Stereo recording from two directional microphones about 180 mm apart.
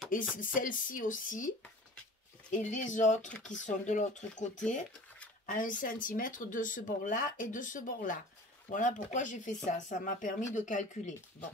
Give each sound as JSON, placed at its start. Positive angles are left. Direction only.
{"t": 0.1, "sound": "speech", "side_deg": 50}
{"t": 2.5, "sound": "speech", "side_deg": 45}
{"t": 5.5, "sound": "speech", "side_deg": 50}